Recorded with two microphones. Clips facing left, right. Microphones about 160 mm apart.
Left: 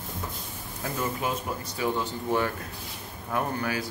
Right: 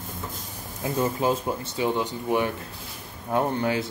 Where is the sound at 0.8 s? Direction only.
30° right (ahead or behind).